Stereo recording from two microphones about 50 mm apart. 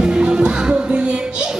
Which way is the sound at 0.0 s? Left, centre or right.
Centre.